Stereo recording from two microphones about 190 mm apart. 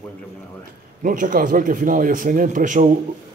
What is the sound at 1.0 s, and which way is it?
Speech, 45° right (ahead or behind).